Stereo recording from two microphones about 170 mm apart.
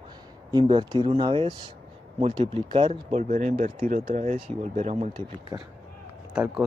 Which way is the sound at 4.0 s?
30° right (ahead or behind).